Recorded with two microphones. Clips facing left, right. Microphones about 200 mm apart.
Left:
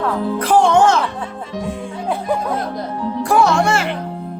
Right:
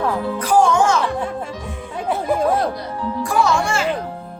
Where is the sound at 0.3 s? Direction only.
60° left (ahead or behind).